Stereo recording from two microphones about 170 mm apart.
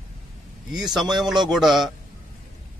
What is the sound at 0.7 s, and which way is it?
A man's voice, centre (ahead or behind).